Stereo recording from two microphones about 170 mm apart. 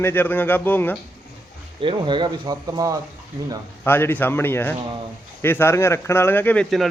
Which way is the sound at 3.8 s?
15° left (ahead or behind).